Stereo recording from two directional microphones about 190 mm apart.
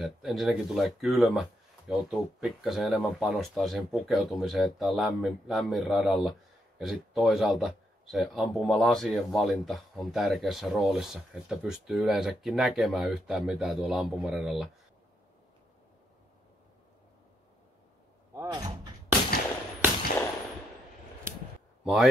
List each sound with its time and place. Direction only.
0.0 s speech: centre (ahead or behind)
18.3 s speech: 15° right (ahead or behind)
21.8 s speech: centre (ahead or behind)